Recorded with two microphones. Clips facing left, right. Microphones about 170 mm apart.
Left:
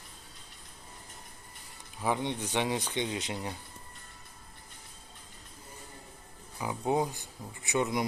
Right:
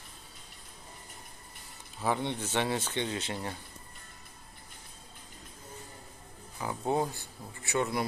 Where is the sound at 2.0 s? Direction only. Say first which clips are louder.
Even; 15° left (ahead or behind).